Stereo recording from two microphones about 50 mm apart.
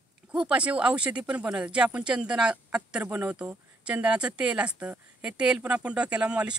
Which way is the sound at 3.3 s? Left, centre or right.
Right.